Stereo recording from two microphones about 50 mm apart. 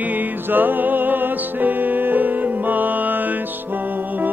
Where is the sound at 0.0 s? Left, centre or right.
Right.